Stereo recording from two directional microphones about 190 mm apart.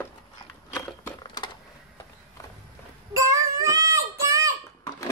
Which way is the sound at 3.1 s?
15° right (ahead or behind).